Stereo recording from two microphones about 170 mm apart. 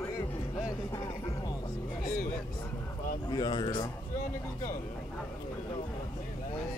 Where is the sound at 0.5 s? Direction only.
20° left (ahead or behind).